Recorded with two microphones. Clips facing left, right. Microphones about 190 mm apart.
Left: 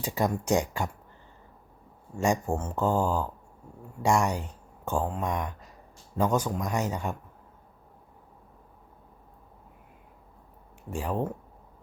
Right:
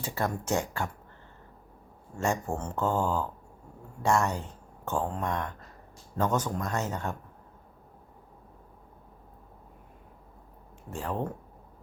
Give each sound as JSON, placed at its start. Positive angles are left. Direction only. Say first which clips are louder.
{"t": 0.0, "sound": "speech", "louder": "left 4 dB", "side_deg": 15}
{"t": 2.1, "sound": "speech", "louder": "left 3 dB", "side_deg": 15}
{"t": 10.9, "sound": "speech", "louder": "left 3 dB", "side_deg": 10}